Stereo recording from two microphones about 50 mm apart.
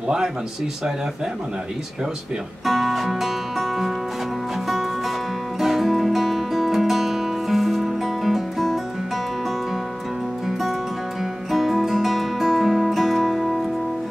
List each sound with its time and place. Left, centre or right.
2.6 s music: centre
10.4 s music: centre